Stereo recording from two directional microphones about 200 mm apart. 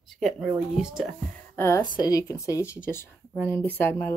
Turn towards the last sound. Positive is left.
turn(degrees=10)  # may be behind; listen again after turning